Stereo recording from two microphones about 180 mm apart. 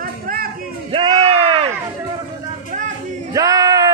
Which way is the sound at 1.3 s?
30° right (ahead or behind).